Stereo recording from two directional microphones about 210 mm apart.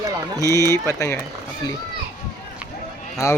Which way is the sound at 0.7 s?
15° left (ahead or behind).